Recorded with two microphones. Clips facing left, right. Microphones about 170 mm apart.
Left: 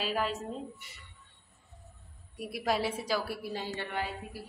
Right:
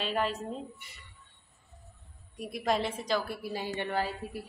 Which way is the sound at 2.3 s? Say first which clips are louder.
Right 1 dB; 5° left (ahead or behind).